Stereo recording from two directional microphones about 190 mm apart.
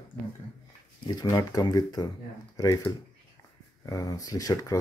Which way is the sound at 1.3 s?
20° left (ahead or behind).